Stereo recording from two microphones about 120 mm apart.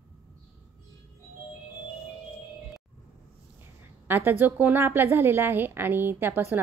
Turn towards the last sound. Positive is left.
turn(degrees=-15)  # may be behind; listen again after turning